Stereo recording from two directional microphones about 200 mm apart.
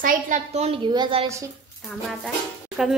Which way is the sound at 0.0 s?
40° right (ahead or behind).